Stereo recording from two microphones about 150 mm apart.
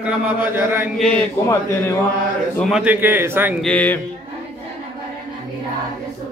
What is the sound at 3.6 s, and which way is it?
Speech, 10° left (ahead or behind).